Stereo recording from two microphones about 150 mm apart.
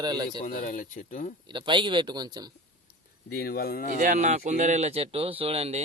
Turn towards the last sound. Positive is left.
turn(degrees=-40)  # may be behind; listen again after turning